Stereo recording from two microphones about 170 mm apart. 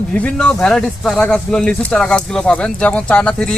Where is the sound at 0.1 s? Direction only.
5° left (ahead or behind).